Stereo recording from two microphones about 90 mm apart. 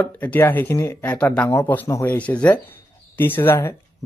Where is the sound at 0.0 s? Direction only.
20° left (ahead or behind).